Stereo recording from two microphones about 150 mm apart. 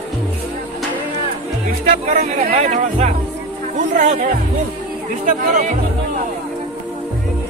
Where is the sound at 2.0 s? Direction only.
45° right (ahead or behind).